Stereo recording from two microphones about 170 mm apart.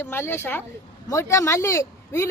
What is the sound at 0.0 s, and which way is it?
Speech, 15° left (ahead or behind).